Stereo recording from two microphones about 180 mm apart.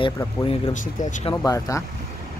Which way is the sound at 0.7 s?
45° left (ahead or behind).